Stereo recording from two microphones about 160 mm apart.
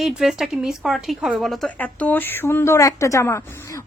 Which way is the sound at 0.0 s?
5° right (ahead or behind).